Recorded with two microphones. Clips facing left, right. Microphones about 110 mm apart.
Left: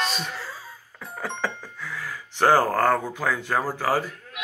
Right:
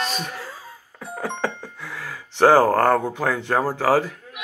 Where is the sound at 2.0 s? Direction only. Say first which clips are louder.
Right 6 dB; 75° right (ahead or behind).